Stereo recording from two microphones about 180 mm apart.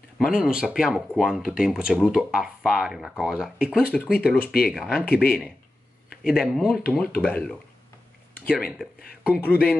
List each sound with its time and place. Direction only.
0.2 s speech: 5° right (ahead or behind)
9.5 s speech: 10° left (ahead or behind)